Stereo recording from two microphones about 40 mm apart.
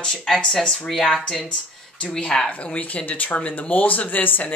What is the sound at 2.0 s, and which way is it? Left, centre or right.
Speech, left.